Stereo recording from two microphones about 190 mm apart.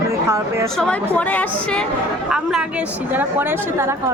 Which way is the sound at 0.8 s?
5° left (ahead or behind).